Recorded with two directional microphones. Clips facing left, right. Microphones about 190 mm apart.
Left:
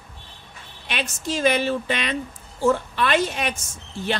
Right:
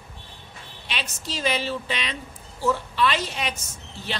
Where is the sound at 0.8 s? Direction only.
50° left (ahead or behind).